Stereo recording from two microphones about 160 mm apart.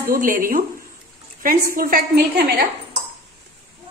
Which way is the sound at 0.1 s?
60° right (ahead or behind).